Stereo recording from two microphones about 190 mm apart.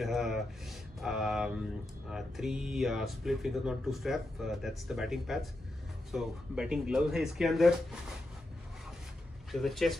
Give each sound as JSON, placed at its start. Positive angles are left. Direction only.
{"t": 0.0, "sound": "speech", "side_deg": 0}
{"t": 9.5, "sound": "speech", "side_deg": 0}